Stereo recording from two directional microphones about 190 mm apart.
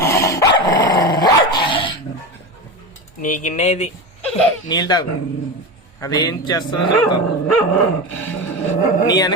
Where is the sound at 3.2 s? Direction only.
45° left (ahead or behind).